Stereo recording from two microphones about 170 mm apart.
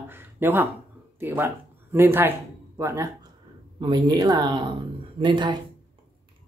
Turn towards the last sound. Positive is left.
turn(degrees=-25)  # may be behind; listen again after turning